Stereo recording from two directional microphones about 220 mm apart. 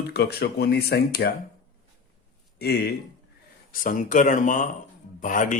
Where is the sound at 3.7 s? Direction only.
40° left (ahead or behind).